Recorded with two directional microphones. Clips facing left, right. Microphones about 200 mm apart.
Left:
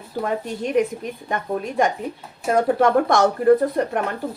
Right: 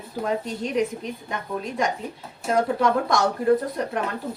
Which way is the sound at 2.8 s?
55° left (ahead or behind).